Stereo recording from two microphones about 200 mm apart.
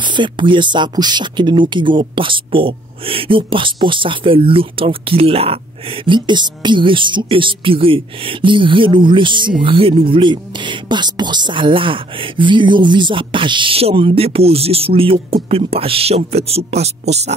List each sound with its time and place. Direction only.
0.0 s speech: 25° right (ahead or behind)